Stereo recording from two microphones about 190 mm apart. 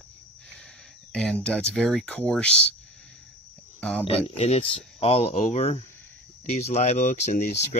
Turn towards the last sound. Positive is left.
turn(degrees=35)  # may be behind; listen again after turning